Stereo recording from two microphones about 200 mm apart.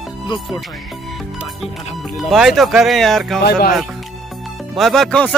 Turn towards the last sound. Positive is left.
turn(degrees=5)  # may be behind; listen again after turning